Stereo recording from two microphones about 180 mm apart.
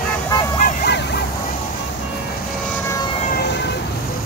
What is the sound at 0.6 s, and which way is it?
Ambulance, 60° left (ahead or behind).